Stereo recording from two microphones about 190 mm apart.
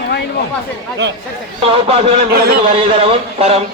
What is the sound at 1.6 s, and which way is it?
Speech, 30° right (ahead or behind).